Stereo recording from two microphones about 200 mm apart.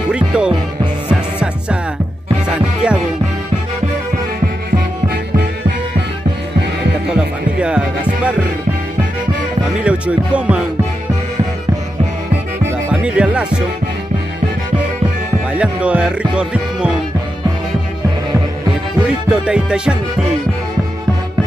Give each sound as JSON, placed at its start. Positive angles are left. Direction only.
{"t": 0.1, "sound": "speech", "side_deg": -5}
{"t": 1.0, "sound": "music", "side_deg": -5}
{"t": 4.7, "sound": "music", "side_deg": -55}
{"t": 7.1, "sound": "music", "side_deg": -5}
{"t": 9.8, "sound": "music", "side_deg": -5}
{"t": 12.9, "sound": "music", "side_deg": -5}
{"t": 15.5, "sound": "music", "side_deg": -5}
{"t": 19.4, "sound": "music", "side_deg": -5}